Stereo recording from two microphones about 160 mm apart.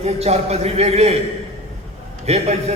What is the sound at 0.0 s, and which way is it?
A man's voice, 40° right (ahead or behind).